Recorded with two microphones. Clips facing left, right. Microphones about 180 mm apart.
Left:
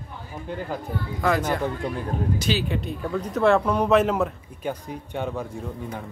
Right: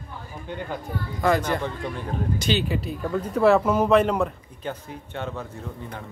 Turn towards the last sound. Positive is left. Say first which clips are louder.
# left 3 dB
turn(degrees=15)  # may be behind; listen again after turning